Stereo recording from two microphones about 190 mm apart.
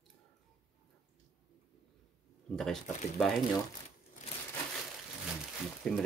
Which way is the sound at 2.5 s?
5° left (ahead or behind).